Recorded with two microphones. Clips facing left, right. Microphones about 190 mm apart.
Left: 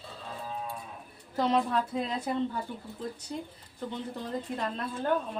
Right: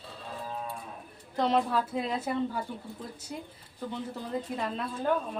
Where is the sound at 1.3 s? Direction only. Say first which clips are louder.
Even; centre (ahead or behind).